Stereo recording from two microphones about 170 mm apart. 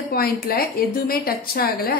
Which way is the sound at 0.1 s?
60° left (ahead or behind).